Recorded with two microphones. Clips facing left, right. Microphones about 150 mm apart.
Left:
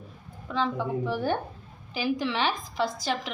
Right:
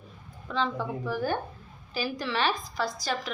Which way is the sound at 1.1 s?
25° left (ahead or behind).